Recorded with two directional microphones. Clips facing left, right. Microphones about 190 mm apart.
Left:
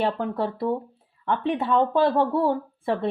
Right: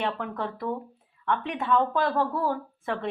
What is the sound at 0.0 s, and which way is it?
A woman's voice, 35° left (ahead or behind).